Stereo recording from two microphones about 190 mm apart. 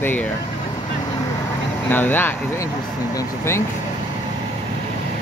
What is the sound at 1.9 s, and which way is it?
Speech, 10° left (ahead or behind).